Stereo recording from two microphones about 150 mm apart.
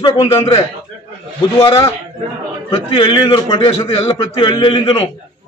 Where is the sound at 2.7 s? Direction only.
40° left (ahead or behind).